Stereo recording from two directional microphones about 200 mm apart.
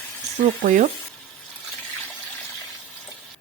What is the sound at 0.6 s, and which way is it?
Speech, 45° right (ahead or behind).